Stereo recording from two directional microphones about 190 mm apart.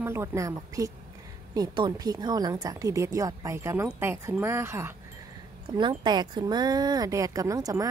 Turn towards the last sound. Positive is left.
turn(degrees=-20)  # may be behind; listen again after turning